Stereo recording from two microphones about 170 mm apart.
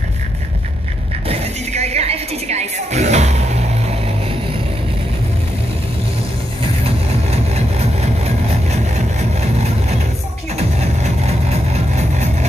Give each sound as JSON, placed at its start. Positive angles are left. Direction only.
{"t": 1.3, "sound": "a sound", "side_deg": -40}
{"t": 6.8, "sound": "vehicle", "side_deg": -35}
{"t": 10.5, "sound": "music", "side_deg": -40}